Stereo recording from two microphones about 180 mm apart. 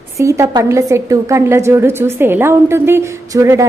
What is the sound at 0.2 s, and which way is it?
A woman's voice, 15° right (ahead or behind).